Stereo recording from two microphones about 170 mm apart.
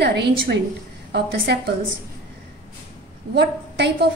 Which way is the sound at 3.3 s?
90° right.